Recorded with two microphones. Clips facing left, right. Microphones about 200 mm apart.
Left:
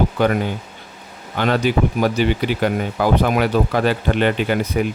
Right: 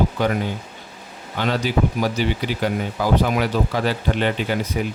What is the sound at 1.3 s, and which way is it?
Speech, 55° left (ahead or behind).